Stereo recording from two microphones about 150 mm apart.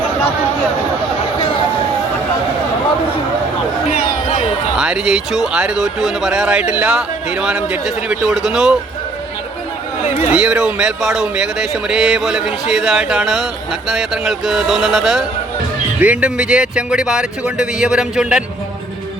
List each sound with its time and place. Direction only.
3.9 s a sound: 50° left (ahead or behind)
4.8 s speech: 5° right (ahead or behind)
10.3 s speech: 5° right (ahead or behind)